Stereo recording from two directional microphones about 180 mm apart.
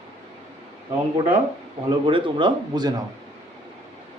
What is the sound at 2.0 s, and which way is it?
Speech, 30° right (ahead or behind).